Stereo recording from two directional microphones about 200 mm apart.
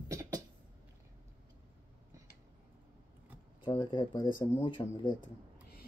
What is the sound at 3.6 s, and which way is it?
Speech, 25° left (ahead or behind).